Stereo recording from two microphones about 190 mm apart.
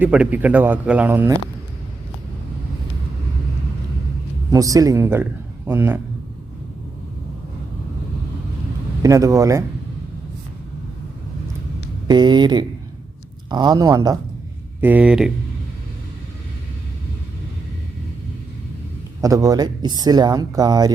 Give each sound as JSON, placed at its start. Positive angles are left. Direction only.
{"t": 0.0, "sound": "speech", "side_deg": -5}
{"t": 4.5, "sound": "speech", "side_deg": -20}
{"t": 9.0, "sound": "speech", "side_deg": -15}
{"t": 12.0, "sound": "speech", "side_deg": -20}
{"t": 19.2, "sound": "speech", "side_deg": -20}